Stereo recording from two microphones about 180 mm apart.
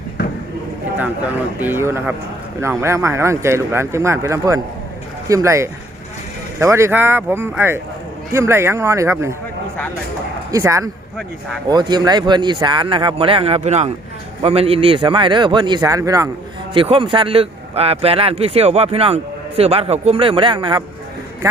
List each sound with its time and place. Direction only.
0.9 s speech: 10° right (ahead or behind)
10.5 s speech: 15° right (ahead or behind)
16.7 s speech: 30° right (ahead or behind)